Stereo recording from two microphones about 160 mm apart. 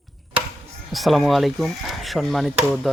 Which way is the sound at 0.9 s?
Centre (ahead or behind).